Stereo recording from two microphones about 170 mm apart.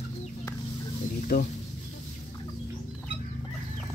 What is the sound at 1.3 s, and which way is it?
Speech, 65° left (ahead or behind).